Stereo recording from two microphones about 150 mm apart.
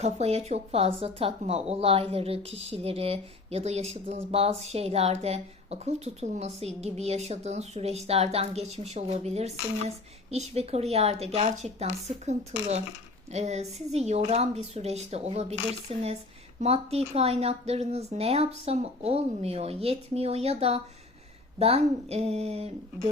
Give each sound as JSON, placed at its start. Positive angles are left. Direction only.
{"t": 0.0, "sound": "speech", "side_deg": -45}